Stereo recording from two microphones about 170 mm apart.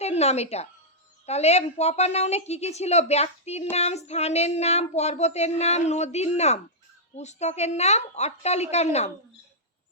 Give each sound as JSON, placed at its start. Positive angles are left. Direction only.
{"t": 0.0, "sound": "a woman's voice", "side_deg": 40}